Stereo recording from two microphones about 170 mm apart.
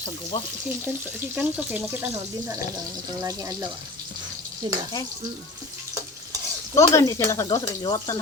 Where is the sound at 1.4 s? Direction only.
10° right (ahead or behind).